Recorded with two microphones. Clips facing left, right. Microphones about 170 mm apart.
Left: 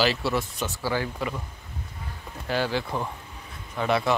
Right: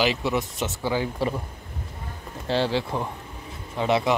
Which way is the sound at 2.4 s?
25° right (ahead or behind).